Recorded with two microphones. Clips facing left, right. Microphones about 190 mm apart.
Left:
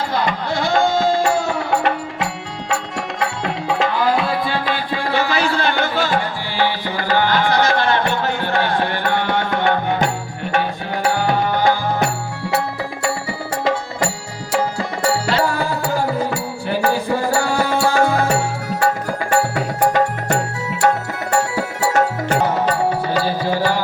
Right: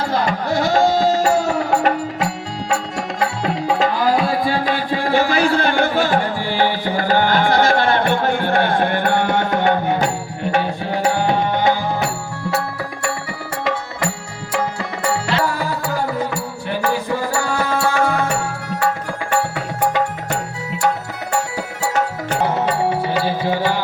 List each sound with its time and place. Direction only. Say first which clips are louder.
0.1 s music: right 2 dB; 45° right (ahead or behind)
3.4 s music: right 2 dB; 40° right (ahead or behind); by 11.8 s 25° right (ahead or behind)
14.8 s music: left 2 dB; 35° left (ahead or behind)
19.5 s music: left 3 dB; 40° left (ahead or behind)
22.4 s music: even; 25° right (ahead or behind)